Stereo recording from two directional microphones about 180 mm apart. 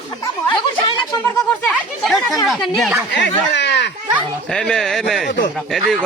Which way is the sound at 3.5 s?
75° left (ahead or behind).